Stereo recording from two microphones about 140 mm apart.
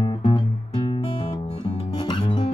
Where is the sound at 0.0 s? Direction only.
35° left (ahead or behind).